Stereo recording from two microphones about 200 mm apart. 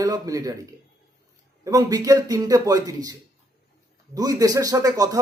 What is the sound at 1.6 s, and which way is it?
A man's voice, 15° right (ahead or behind).